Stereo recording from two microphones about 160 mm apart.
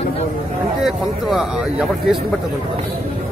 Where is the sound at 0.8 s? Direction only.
Centre (ahead or behind).